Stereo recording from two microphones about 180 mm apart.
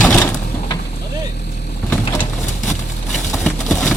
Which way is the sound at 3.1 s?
5° left (ahead or behind).